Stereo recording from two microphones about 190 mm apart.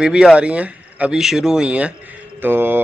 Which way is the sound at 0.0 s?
5° right (ahead or behind).